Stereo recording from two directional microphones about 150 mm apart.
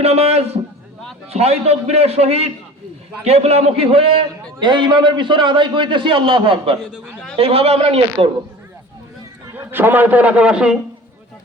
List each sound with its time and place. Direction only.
0.0 s a sound: 45° right (ahead or behind)
1.3 s a man's voice: 45° right (ahead or behind)
6.9 s a man's voice: centre (ahead or behind)
7.3 s a man's voice: 40° right (ahead or behind)
9.6 s a man's voice: 15° right (ahead or behind)